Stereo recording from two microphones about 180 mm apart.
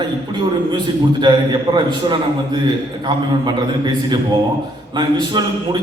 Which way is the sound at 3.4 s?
25° right (ahead or behind).